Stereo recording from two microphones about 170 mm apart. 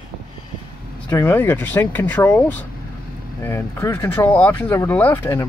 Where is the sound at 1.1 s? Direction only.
15° left (ahead or behind).